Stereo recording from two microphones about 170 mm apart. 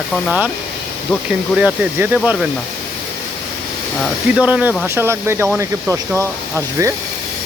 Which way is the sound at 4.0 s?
5° right (ahead or behind).